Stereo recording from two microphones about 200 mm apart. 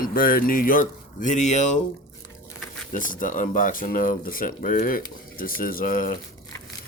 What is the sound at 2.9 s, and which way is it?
Speech, 40° left (ahead or behind).